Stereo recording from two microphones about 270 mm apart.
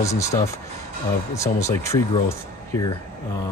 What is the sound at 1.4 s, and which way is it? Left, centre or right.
Speech, centre.